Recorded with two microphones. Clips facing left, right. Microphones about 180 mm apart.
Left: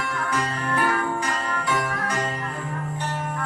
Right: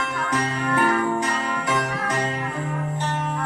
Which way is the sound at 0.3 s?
20° right (ahead or behind).